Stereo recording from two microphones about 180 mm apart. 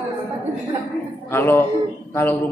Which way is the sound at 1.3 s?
10° left (ahead or behind).